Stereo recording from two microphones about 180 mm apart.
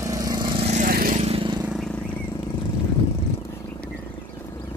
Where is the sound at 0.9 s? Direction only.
55° right (ahead or behind).